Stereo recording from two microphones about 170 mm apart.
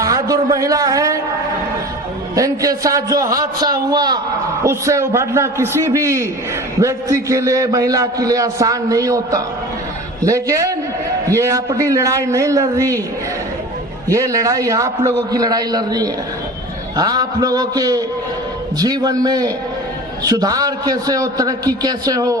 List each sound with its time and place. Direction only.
0.0 s a man's voice: 20° right (ahead or behind)
2.3 s a man's voice: 20° right (ahead or behind)
14.1 s a man's voice: 20° right (ahead or behind)